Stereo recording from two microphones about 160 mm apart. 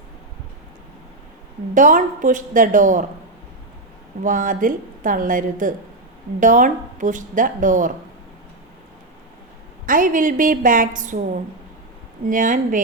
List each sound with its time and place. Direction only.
1.7 s speech: 55° right (ahead or behind)
4.2 s a woman's voice: 55° right (ahead or behind)
9.8 s a woman's voice: 60° right (ahead or behind)
12.3 s a woman's voice: 55° right (ahead or behind)